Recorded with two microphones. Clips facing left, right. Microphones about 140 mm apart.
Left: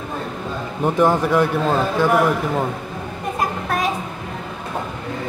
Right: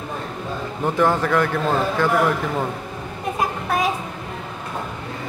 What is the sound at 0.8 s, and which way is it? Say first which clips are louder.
A man's voice: left 2 dB; 15° left (ahead or behind).